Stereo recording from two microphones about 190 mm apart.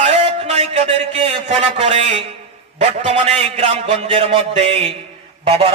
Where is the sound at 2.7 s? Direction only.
35° right (ahead or behind).